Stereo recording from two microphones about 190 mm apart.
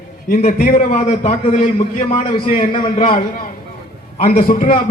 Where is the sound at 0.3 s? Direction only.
40° left (ahead or behind); by 3.1 s 25° left (ahead or behind).